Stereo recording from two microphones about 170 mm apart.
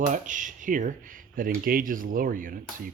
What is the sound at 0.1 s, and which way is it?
Speech, 50° right (ahead or behind).